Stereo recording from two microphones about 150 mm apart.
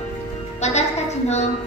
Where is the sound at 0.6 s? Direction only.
50° left (ahead or behind).